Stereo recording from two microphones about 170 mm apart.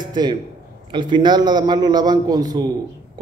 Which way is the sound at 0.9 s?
25° right (ahead or behind).